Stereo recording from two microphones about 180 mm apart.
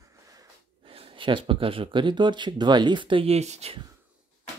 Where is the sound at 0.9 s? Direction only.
30° right (ahead or behind).